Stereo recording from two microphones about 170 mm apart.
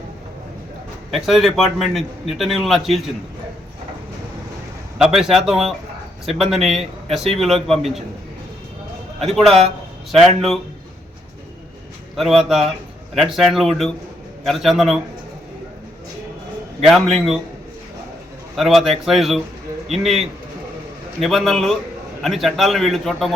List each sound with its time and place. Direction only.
1.1 s a man's voice: centre (ahead or behind)
4.9 s a man's voice: 5° right (ahead or behind)
9.2 s a man's voice: centre (ahead or behind)
12.1 s a man's voice: centre (ahead or behind)
16.8 s a man's voice: centre (ahead or behind)
18.5 s a man's voice: centre (ahead or behind)